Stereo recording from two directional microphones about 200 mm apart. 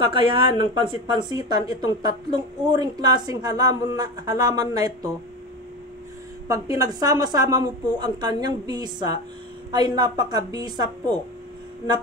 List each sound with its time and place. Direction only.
0.0 s a woman's voice: 25° right (ahead or behind)
6.4 s a woman's voice: 15° right (ahead or behind)